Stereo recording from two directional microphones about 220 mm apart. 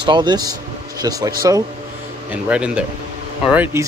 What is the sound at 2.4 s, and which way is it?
Speech, 5° right (ahead or behind).